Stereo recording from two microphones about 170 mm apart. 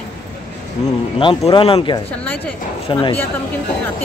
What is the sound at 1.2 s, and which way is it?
Speech, 30° left (ahead or behind).